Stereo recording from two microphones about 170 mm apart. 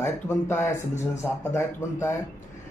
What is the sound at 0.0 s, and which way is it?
Speech, 15° left (ahead or behind).